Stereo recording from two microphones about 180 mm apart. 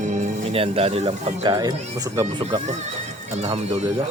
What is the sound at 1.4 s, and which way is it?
Speech, 20° right (ahead or behind).